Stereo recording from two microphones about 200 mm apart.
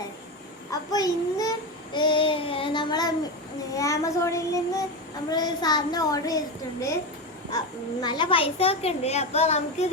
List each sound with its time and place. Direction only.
0.7 s a child's voice: 20° left (ahead or behind)
3.8 s child singing: 15° left (ahead or behind)
5.3 s a child's voice: 20° left (ahead or behind)
8.0 s a child's voice: 20° left (ahead or behind)